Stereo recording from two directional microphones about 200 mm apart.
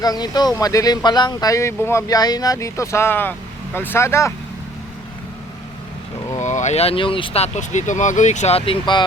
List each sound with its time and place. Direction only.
0.0 s speech: 20° left (ahead or behind)
6.3 s speech: 35° left (ahead or behind)